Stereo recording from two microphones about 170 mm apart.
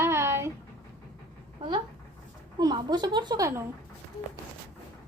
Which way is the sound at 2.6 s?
25° right (ahead or behind).